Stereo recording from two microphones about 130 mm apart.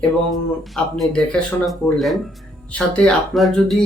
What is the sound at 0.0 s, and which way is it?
Speech, centre (ahead or behind).